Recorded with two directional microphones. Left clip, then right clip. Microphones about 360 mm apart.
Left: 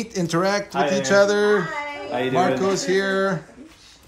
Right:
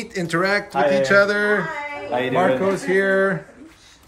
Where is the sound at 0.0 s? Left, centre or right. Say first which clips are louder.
Right 1 dB; centre.